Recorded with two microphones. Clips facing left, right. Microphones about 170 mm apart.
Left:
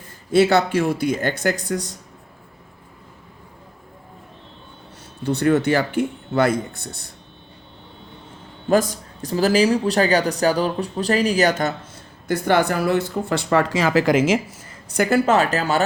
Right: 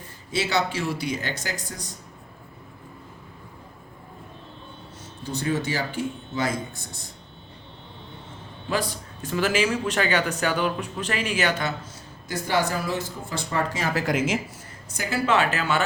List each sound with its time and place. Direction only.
0.3 s speech: 55° left (ahead or behind)
5.2 s speech: 65° left (ahead or behind)
8.7 s speech: 45° left (ahead or behind)
12.3 s speech: 60° left (ahead or behind); by 14.3 s 90° left
14.9 s speech: 70° left (ahead or behind)
15.3 s speech: 40° left (ahead or behind)